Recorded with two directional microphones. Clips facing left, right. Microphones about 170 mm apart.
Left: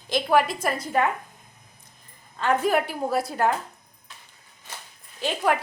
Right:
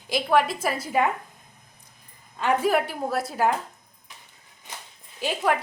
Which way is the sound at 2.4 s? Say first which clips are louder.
Even; 5° right (ahead or behind).